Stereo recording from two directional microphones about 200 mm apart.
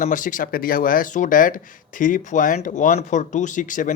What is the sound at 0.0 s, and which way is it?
Speech, 40° left (ahead or behind).